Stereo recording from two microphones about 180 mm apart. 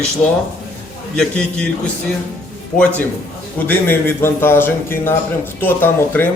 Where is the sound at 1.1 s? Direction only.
5° left (ahead or behind).